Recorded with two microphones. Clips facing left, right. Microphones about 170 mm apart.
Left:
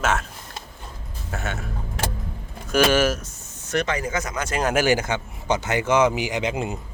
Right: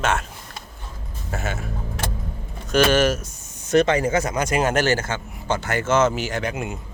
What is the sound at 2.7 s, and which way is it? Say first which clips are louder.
Speech: right 1 dB; 10° left (ahead or behind).